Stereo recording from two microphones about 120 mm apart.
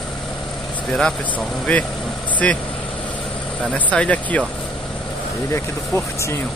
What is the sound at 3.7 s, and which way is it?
Speech, 10° left (ahead or behind).